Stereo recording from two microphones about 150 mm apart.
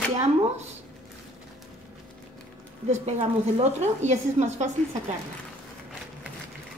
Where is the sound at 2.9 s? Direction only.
50° right (ahead or behind).